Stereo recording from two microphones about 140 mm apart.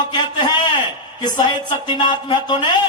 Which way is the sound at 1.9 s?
35° left (ahead or behind).